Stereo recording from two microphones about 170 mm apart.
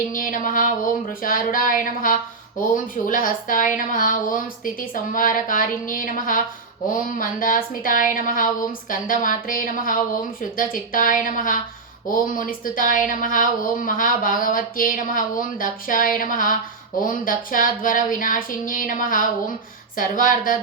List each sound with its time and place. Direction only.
0.1 s a woman's voice: 55° left (ahead or behind)